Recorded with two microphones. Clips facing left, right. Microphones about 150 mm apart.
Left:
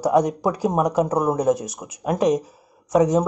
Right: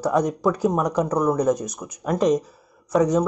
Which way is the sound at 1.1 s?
20° left (ahead or behind).